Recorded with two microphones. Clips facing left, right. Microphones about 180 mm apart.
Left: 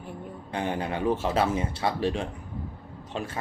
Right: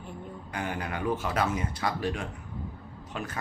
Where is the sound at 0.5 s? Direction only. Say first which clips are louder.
Left 5 dB; 25° left (ahead or behind).